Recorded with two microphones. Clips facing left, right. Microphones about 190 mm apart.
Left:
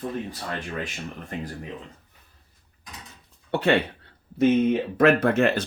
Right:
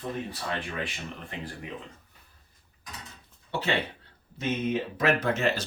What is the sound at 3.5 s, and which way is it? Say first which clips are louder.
Speech: left 7 dB; 60° left (ahead or behind).